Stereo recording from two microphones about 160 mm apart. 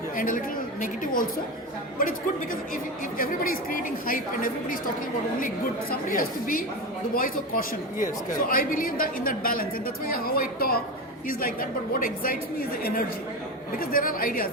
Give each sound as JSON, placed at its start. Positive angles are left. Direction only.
{"t": 0.2, "sound": "a woman's voice", "side_deg": 55}
{"t": 5.9, "sound": "a woman's voice", "side_deg": 60}